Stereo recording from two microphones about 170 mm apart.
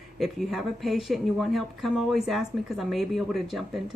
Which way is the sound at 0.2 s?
Centre (ahead or behind).